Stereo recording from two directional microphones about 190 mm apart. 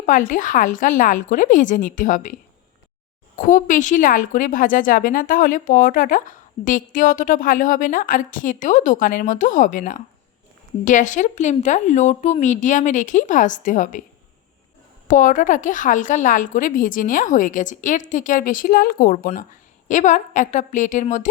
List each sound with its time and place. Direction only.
0.0 s a woman's voice: 40° left (ahead or behind)
3.3 s a woman's voice: 45° left (ahead or behind)
15.0 s a woman's voice: 45° left (ahead or behind)